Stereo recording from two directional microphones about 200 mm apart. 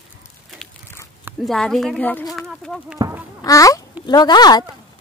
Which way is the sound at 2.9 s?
15° right (ahead or behind).